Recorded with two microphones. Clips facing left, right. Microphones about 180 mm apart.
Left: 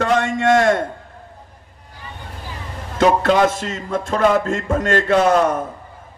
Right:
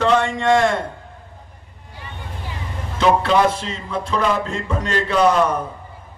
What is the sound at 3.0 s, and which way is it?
Music, 45° left (ahead or behind).